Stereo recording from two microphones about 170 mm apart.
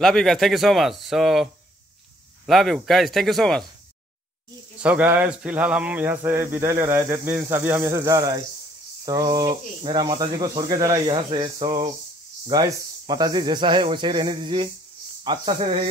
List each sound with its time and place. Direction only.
0.0 s speech: centre (ahead or behind)
4.7 s speech: 10° right (ahead or behind); by 15.8 s 30° right (ahead or behind)